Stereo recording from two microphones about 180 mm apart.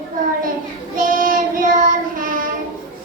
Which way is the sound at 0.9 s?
50° right (ahead or behind).